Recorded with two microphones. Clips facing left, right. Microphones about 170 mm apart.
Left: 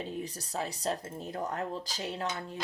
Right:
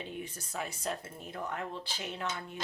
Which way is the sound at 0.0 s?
35° left (ahead or behind).